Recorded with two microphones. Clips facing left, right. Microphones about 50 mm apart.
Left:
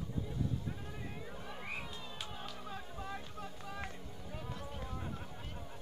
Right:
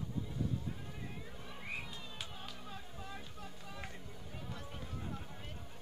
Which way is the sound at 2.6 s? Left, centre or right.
Centre.